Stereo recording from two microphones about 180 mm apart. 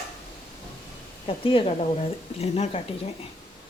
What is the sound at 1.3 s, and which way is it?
Speech, 30° left (ahead or behind).